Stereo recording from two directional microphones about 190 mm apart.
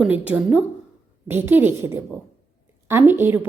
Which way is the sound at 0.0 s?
5° right (ahead or behind).